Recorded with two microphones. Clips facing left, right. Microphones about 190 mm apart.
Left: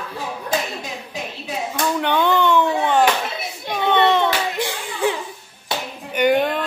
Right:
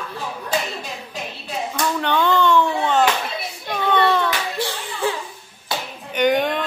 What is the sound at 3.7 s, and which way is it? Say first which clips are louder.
Hands: left 2 dB; 20° left (ahead or behind).